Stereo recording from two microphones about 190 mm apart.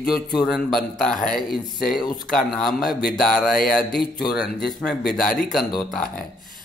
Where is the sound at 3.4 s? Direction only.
50° left (ahead or behind).